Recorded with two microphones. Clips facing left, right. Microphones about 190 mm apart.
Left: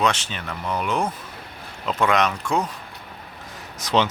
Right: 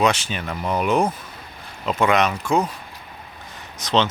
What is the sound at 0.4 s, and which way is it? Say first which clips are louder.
Speech: right 4 dB; 20° right (ahead or behind).